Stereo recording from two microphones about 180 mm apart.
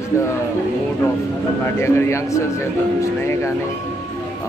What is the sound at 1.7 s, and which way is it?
Speech, 15° left (ahead or behind).